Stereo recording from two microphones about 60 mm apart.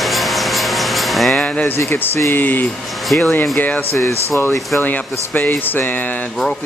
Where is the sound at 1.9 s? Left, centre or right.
Left.